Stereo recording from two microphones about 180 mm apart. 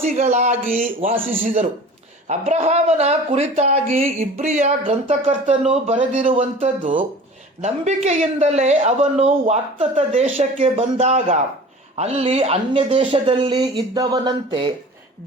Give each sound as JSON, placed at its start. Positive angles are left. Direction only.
{"t": 0.2, "sound": "speech", "side_deg": -40}
{"t": 2.2, "sound": "speech", "side_deg": -40}